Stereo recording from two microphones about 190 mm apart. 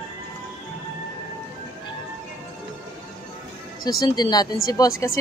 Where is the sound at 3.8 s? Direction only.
20° left (ahead or behind).